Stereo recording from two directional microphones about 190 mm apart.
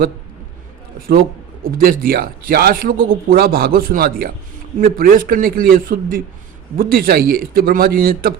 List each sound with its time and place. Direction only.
1.6 s speech: 50° right (ahead or behind)